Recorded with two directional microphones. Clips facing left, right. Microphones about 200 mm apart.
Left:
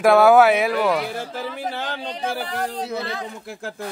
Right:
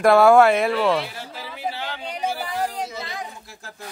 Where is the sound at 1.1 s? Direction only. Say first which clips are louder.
Left 7 dB; 50° left (ahead or behind).